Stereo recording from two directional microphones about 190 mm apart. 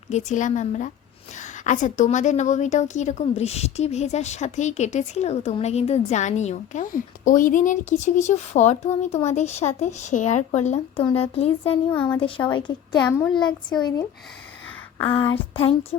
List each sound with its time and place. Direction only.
0.1 s a woman's voice: 40° left (ahead or behind)
11.9 s speech: 10° left (ahead or behind)
12.2 s a woman's voice: 25° left (ahead or behind)
13.0 s speech: 10° left (ahead or behind)
13.3 s a woman's voice: 25° left (ahead or behind)
15.0 s a woman's voice: 30° left (ahead or behind)